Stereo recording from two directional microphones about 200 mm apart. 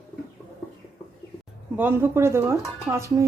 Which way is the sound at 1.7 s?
10° right (ahead or behind).